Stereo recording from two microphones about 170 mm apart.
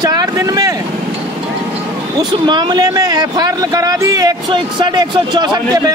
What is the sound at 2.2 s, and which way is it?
A man's voice, 25° right (ahead or behind).